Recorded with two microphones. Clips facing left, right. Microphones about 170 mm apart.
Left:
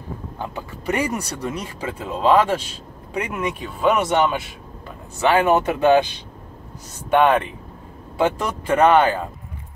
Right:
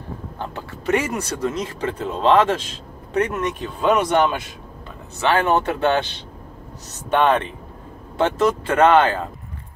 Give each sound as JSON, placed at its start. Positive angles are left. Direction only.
{"t": 0.4, "sound": "speech", "side_deg": 15}
{"t": 8.2, "sound": "speech", "side_deg": 10}